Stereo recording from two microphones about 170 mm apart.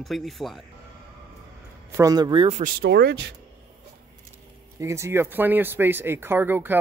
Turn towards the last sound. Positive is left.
turn(degrees=-10)  # may be behind; listen again after turning